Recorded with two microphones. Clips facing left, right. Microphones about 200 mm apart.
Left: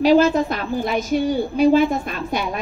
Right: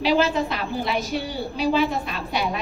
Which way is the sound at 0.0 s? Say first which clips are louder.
Left 6 dB; 45° left (ahead or behind).